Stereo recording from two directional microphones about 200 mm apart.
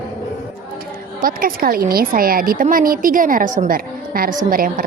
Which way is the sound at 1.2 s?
45° right (ahead or behind).